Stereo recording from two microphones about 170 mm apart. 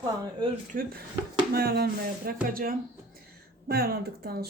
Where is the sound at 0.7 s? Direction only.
60° right (ahead or behind).